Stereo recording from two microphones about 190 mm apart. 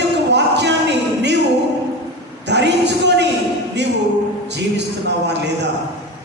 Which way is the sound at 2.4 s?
65° right (ahead or behind).